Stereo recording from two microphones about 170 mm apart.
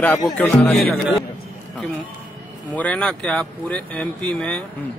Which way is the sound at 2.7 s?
10° left (ahead or behind).